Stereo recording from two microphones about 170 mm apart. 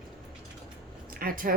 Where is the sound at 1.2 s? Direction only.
60° right (ahead or behind).